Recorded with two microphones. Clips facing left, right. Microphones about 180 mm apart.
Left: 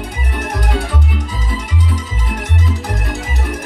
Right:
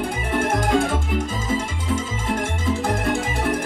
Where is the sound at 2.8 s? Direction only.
50° right (ahead or behind).